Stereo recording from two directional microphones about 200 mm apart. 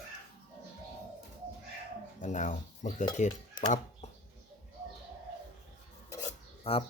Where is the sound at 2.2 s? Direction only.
40° left (ahead or behind).